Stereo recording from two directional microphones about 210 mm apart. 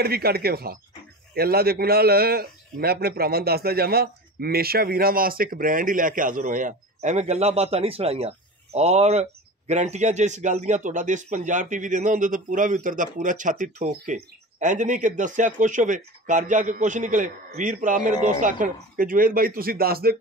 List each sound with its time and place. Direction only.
0.0 s a man's voice: 45° right (ahead or behind)